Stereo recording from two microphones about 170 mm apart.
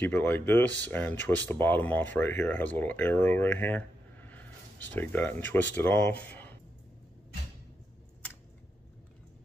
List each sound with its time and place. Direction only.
0.0 s speech: 10° left (ahead or behind)